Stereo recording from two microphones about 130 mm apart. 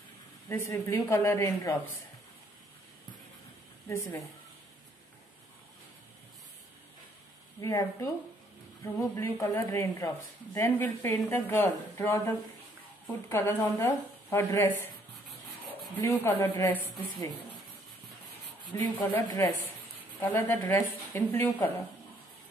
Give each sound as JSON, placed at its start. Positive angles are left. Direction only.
{"t": 0.7, "sound": "a woman's voice", "side_deg": 20}
{"t": 3.9, "sound": "speech", "side_deg": 15}
{"t": 7.6, "sound": "a woman's voice", "side_deg": 25}
{"t": 16.2, "sound": "speech", "side_deg": 15}
{"t": 18.7, "sound": "speech", "side_deg": 15}
{"t": 19.2, "sound": "a woman's voice", "side_deg": 30}
{"t": 20.3, "sound": "speech", "side_deg": 15}